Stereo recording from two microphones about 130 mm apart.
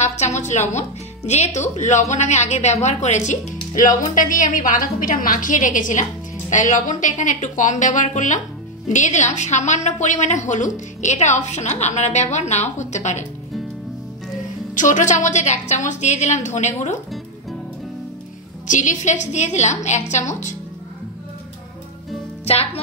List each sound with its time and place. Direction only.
0.0 s speech: 60° left (ahead or behind)
3.7 s a woman's voice: 90° left
6.5 s a woman's voice: 70° left (ahead or behind)
14.7 s a woman's voice: 80° left
18.7 s a woman's voice: 75° left (ahead or behind)
22.4 s music: 50° left (ahead or behind)